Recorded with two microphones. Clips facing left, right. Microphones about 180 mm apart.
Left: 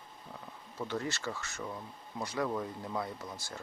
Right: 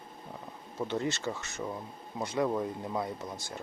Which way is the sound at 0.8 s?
20° right (ahead or behind).